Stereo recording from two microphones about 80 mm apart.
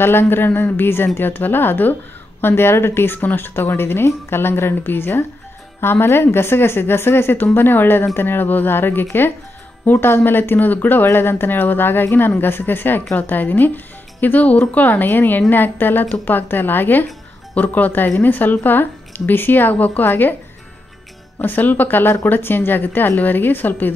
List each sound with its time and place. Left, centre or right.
0.0 s speech: left
21.4 s speech: left